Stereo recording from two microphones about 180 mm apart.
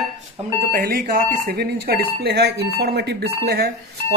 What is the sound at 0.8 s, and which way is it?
Speech, 55° right (ahead or behind).